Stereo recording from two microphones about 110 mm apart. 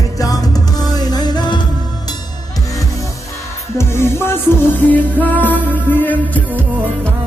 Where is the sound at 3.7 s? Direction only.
25° left (ahead or behind).